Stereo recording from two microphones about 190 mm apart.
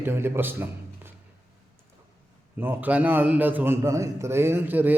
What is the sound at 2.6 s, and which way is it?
A man's voice, 10° right (ahead or behind).